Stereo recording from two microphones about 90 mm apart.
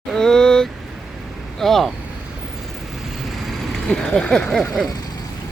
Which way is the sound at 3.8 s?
10° left (ahead or behind).